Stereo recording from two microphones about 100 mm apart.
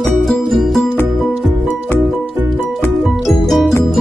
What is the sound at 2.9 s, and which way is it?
Music, centre (ahead or behind).